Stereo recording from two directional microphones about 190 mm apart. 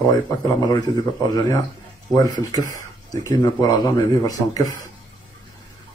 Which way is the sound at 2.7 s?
20° left (ahead or behind).